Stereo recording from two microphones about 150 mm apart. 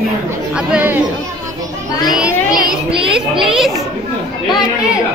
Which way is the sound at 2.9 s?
35° right (ahead or behind).